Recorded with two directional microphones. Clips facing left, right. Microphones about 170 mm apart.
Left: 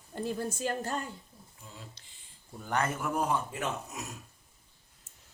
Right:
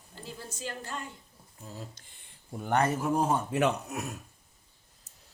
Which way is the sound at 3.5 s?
70° right (ahead or behind).